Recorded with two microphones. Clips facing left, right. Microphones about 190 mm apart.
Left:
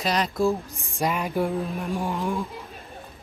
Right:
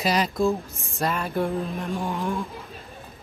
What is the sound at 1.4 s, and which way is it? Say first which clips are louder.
Speech: even; centre (ahead or behind).